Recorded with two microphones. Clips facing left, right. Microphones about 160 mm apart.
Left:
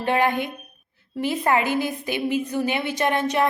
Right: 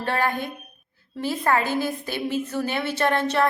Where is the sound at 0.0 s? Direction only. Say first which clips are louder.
Left 3 dB; 15° left (ahead or behind).